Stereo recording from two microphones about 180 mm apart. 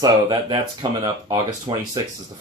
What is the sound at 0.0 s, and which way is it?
Speech, 25° right (ahead or behind).